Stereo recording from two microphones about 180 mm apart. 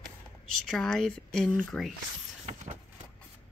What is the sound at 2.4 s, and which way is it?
Vehicle, 45° right (ahead or behind).